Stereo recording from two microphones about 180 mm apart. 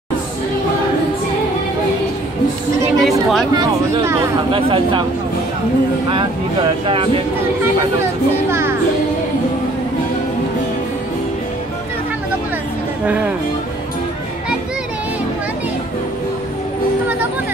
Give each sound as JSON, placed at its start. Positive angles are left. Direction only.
{"t": 3.0, "sound": "chatter", "side_deg": 0}
{"t": 3.5, "sound": "speech", "side_deg": -15}
{"t": 4.5, "sound": "speech", "side_deg": -30}
{"t": 8.5, "sound": "music", "side_deg": -15}
{"t": 13.0, "sound": "speech", "side_deg": -10}